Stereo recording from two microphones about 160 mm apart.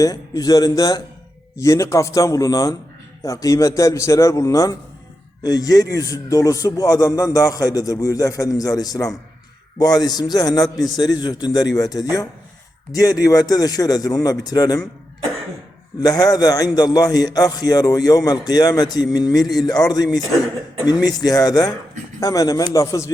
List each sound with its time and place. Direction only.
0.0 s a man's voice: 20° left (ahead or behind)
16.0 s a man's voice: 25° left (ahead or behind)